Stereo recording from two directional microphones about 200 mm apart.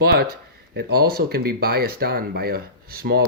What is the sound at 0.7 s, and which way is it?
Speech, 50° right (ahead or behind).